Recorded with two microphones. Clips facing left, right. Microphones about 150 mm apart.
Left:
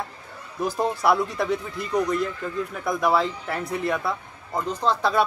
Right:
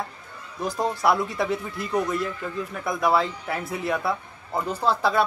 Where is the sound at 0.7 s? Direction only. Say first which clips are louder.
Left 1 dB; centre (ahead or behind).